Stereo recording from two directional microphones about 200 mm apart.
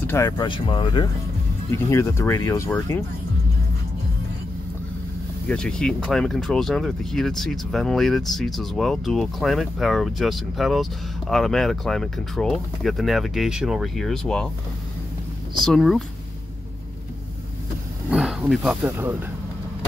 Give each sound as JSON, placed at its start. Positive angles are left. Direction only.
{"t": 0.0, "sound": "speech", "side_deg": 15}
{"t": 1.7, "sound": "speech", "side_deg": 15}
{"t": 5.5, "sound": "speech", "side_deg": 5}
{"t": 15.6, "sound": "speech", "side_deg": 0}
{"t": 18.1, "sound": "roaring cats", "side_deg": -5}
{"t": 18.5, "sound": "speech", "side_deg": -5}